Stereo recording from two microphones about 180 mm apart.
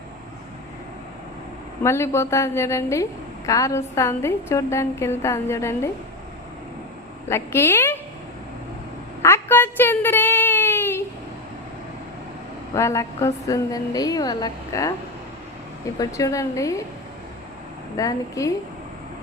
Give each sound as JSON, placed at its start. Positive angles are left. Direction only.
{"t": 1.8, "sound": "a woman's voice", "side_deg": 15}
{"t": 7.3, "sound": "a woman's voice", "side_deg": 15}
{"t": 9.2, "sound": "a sound", "side_deg": 15}
{"t": 12.7, "sound": "a woman's voice", "side_deg": 15}
{"t": 16.0, "sound": "a woman's voice", "side_deg": 20}
{"t": 17.9, "sound": "a woman's voice", "side_deg": 20}